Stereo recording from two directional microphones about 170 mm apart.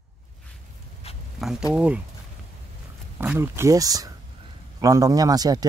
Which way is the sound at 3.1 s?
10° right (ahead or behind).